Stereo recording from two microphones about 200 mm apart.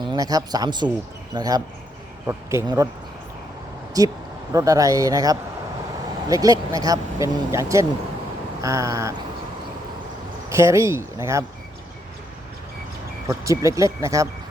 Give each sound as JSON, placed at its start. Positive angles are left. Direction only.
{"t": 0.0, "sound": "speech", "side_deg": -20}
{"t": 4.0, "sound": "speech", "side_deg": -20}
{"t": 10.5, "sound": "speech", "side_deg": -15}
{"t": 13.2, "sound": "speech", "side_deg": -15}